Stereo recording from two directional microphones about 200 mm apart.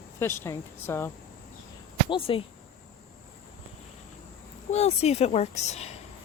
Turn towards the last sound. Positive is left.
turn(degrees=35)  # may be behind; listen again after turning